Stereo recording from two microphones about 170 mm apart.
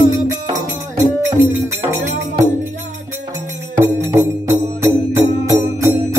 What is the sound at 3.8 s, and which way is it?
Music, 15° right (ahead or behind).